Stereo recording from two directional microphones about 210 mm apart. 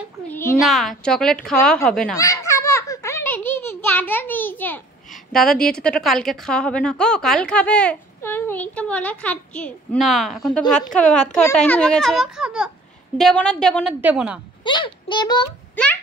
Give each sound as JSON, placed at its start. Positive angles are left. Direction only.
{"t": 0.3, "sound": "a child's voice", "side_deg": 10}
{"t": 0.6, "sound": "a woman's voice", "side_deg": 0}
{"t": 2.1, "sound": "a sound", "side_deg": 15}
{"t": 5.3, "sound": "a woman's voice", "side_deg": 0}
{"t": 14.6, "sound": "a child's voice", "side_deg": 20}
{"t": 15.7, "sound": "a sound", "side_deg": 10}